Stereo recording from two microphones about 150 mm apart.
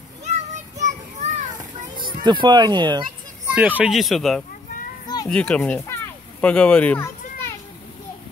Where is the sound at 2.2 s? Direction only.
30° right (ahead or behind).